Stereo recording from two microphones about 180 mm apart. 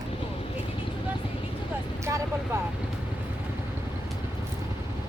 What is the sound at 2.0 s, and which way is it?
Vehicle, 15° right (ahead or behind).